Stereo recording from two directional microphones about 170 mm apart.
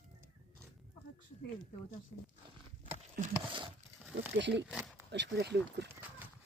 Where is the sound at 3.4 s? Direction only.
30° right (ahead or behind).